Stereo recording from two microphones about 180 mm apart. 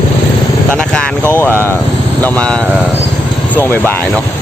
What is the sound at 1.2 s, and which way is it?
Speech, 15° right (ahead or behind).